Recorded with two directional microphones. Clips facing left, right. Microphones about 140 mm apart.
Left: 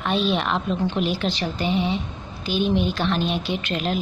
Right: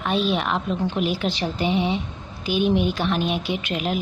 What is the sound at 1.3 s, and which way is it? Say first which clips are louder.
A woman's voice: right 1 dB; 20° right (ahead or behind).